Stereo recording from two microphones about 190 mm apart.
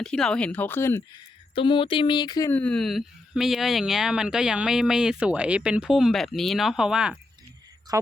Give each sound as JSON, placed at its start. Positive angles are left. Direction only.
{"t": 0.0, "sound": "speech", "side_deg": 5}
{"t": 1.5, "sound": "speech", "side_deg": 25}
{"t": 7.9, "sound": "speech", "side_deg": -20}